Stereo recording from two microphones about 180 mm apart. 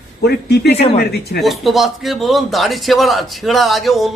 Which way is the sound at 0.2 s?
65° left (ahead or behind).